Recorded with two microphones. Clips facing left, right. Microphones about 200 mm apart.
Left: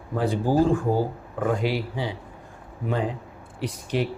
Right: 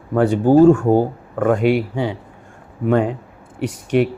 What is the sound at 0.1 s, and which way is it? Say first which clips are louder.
Speech: right 9 dB; 65° right (ahead or behind).